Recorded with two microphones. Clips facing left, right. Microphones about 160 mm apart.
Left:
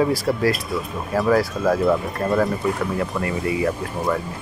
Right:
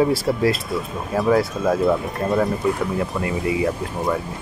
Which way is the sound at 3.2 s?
20° right (ahead or behind).